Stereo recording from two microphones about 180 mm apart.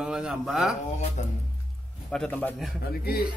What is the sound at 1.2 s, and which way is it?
Speech, 40° left (ahead or behind).